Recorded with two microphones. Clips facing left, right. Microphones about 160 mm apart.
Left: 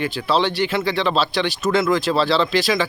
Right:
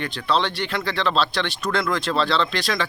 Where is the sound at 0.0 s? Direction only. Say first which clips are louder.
Left 3 dB; 5° left (ahead or behind).